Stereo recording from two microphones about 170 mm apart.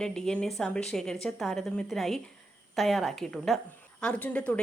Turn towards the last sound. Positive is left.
turn(degrees=5)  # may be behind; listen again after turning